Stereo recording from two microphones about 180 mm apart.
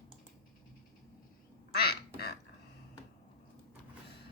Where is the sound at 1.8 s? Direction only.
60° left (ahead or behind).